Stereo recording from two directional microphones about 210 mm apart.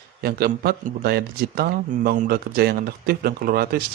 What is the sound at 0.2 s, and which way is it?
Speech, 50° right (ahead or behind).